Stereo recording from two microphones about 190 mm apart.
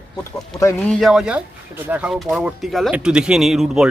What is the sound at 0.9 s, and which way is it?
Speech, centre (ahead or behind).